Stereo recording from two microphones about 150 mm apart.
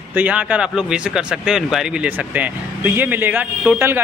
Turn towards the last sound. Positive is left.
turn(degrees=-15)  # may be behind; listen again after turning